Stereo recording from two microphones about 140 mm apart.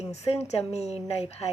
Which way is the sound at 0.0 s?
50° left (ahead or behind).